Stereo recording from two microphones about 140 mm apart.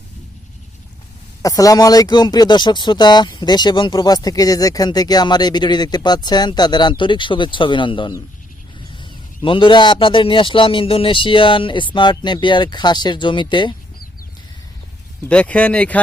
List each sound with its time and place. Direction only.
1.4 s speech: 25° left (ahead or behind)
15.2 s speech: 10° left (ahead or behind)